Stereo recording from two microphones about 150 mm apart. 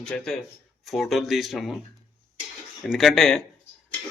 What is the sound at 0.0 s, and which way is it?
Speech, 5° left (ahead or behind).